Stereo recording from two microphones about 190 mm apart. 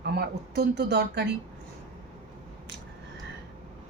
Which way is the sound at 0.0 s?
60° right (ahead or behind).